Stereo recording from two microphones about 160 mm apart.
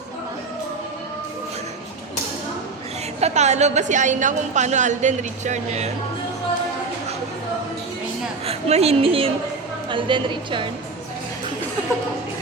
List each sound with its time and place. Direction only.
3.2 s a woman's voice: 45° right (ahead or behind)
8.4 s a woman's voice: 40° right (ahead or behind)